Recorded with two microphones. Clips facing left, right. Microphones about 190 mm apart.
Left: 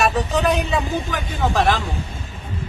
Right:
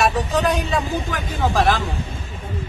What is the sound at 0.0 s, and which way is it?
A man's voice, centre (ahead or behind).